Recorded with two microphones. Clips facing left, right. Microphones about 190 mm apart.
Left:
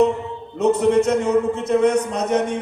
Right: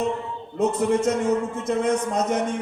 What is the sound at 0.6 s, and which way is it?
A man's voice, 65° left (ahead or behind).